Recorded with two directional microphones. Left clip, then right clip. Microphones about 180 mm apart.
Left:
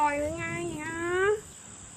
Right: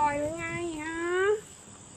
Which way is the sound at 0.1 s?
15° left (ahead or behind).